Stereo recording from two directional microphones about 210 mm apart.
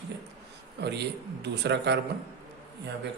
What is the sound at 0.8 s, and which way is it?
Speech, 50° right (ahead or behind).